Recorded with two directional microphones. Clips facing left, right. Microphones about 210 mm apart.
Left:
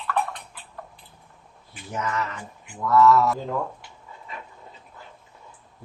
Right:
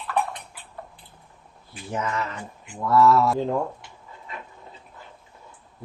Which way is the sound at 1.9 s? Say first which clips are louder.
Right 1 dB; 30° right (ahead or behind).